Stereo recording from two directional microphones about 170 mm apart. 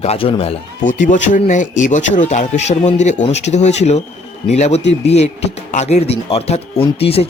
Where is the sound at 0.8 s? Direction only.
50° left (ahead or behind).